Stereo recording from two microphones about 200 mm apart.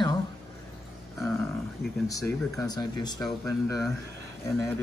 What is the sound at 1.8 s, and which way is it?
Speech, centre (ahead or behind).